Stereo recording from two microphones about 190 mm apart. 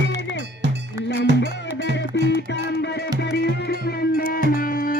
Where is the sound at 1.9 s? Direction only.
65° left (ahead or behind).